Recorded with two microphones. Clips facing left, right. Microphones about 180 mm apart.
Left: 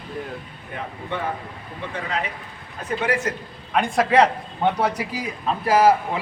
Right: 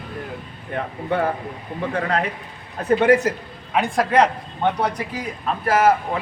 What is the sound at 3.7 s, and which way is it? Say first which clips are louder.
Speech: even; 5° right (ahead or behind).